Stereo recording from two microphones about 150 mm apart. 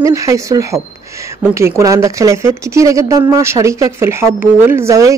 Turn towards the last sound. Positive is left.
turn(degrees=-20)  # may be behind; listen again after turning